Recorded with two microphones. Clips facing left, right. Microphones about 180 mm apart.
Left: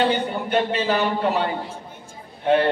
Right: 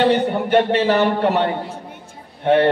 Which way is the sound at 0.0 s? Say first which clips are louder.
Right 5 dB; 65° right (ahead or behind).